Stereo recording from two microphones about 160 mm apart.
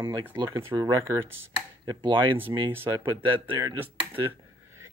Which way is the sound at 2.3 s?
15° right (ahead or behind).